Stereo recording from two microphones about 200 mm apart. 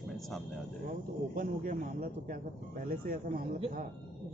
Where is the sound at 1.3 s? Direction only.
45° right (ahead or behind).